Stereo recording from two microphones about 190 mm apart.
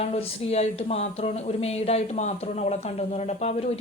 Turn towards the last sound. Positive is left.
turn(degrees=35)  # may be behind; listen again after turning